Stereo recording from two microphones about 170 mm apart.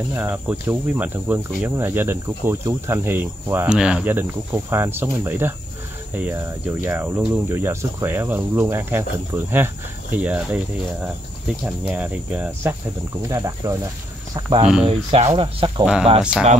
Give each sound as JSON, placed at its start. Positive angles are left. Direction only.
{"t": 0.1, "sound": "cricket", "side_deg": -10}
{"t": 13.3, "sound": "speech", "side_deg": -20}
{"t": 14.9, "sound": "speech", "side_deg": -35}
{"t": 15.8, "sound": "speech", "side_deg": -5}